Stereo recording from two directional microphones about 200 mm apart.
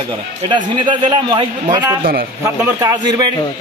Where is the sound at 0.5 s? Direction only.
25° right (ahead or behind).